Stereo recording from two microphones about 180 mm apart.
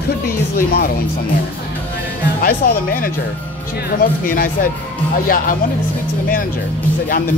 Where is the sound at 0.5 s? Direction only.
55° left (ahead or behind).